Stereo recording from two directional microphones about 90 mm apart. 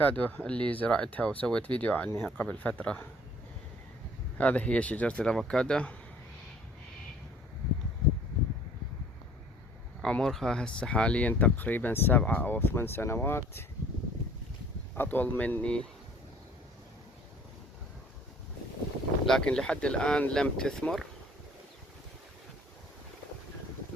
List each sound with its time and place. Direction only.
0.0 s speech: 20° left (ahead or behind)
2.0 s speech: 25° left (ahead or behind)
4.4 s speech: 15° left (ahead or behind)
10.0 s speech: 5° left (ahead or behind); by 13.7 s 25° left (ahead or behind)
14.9 s speech: 20° left (ahead or behind)
19.2 s speech: 5° left (ahead or behind)